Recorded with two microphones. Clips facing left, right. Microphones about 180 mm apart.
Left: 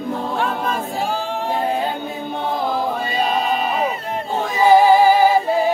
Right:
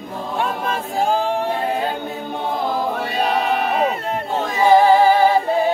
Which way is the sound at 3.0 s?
70° right (ahead or behind).